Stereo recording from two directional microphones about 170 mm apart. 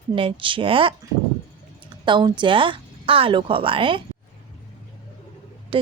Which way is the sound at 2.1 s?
25° right (ahead or behind).